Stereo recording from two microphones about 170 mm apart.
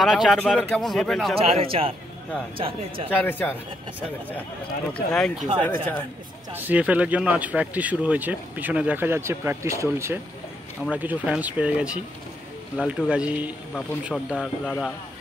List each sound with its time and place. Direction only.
0.0 s speech: centre (ahead or behind)
1.4 s speech: 35° right (ahead or behind)
3.1 s speech: 10° left (ahead or behind)
5.1 s speech: 5° left (ahead or behind)
6.5 s speech: 10° right (ahead or behind)
14.1 s speech: 5° left (ahead or behind)